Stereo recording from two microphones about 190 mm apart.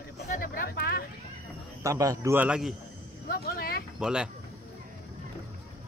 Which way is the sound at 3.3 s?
55° left (ahead or behind).